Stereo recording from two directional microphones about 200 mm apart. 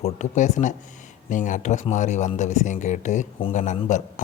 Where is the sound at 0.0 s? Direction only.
35° left (ahead or behind).